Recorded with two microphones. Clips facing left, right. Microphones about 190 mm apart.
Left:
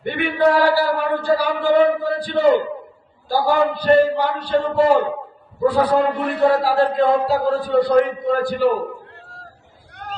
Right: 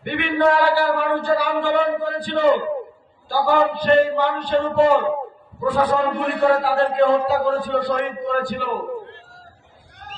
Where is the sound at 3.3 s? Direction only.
35° left (ahead or behind).